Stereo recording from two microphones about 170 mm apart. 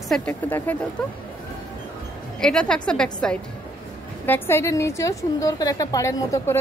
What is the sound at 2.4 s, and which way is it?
A woman's voice, 5° left (ahead or behind).